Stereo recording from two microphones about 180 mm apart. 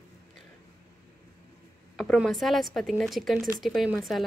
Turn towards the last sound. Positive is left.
turn(degrees=0)  # may be behind; listen again after turning